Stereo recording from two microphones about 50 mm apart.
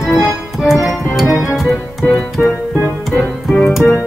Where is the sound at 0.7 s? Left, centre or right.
Centre.